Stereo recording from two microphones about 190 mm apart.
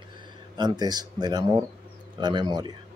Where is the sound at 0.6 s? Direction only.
20° right (ahead or behind).